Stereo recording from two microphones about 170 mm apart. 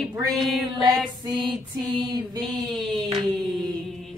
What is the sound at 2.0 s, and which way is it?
Speech, 25° right (ahead or behind).